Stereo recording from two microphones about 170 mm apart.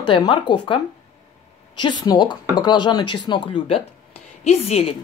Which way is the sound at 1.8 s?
25° left (ahead or behind).